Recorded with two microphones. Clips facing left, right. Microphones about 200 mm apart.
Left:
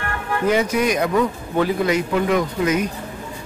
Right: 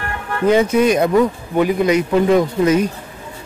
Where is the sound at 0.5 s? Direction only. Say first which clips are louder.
Right 6 dB; 25° right (ahead or behind).